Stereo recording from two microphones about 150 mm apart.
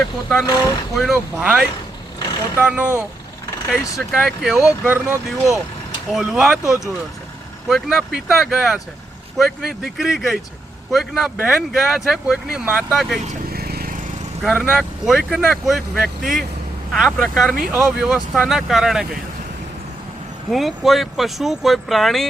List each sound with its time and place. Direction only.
0.0 s speech: 5° left (ahead or behind)
3.9 s speech: centre (ahead or behind)
13.5 s vehicle: 90° right
14.4 s speech: 5° right (ahead or behind)
20.5 s speech: centre (ahead or behind)